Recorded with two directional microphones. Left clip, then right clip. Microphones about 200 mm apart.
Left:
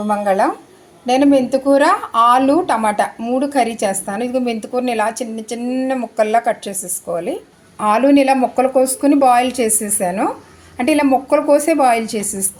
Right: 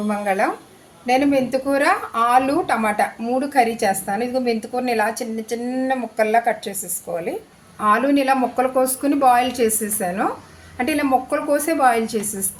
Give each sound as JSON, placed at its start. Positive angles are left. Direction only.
{"t": 0.1, "sound": "speech", "side_deg": 20}